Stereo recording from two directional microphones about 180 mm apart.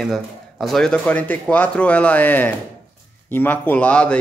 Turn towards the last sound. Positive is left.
turn(degrees=5)  # may be behind; listen again after turning